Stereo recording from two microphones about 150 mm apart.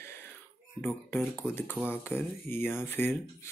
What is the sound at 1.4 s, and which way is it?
Speech, 15° left (ahead or behind).